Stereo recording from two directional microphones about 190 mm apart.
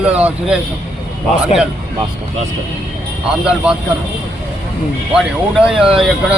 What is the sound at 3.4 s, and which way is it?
Speech, 5° right (ahead or behind).